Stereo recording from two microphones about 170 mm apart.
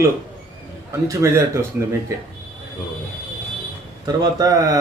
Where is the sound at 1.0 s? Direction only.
20° right (ahead or behind).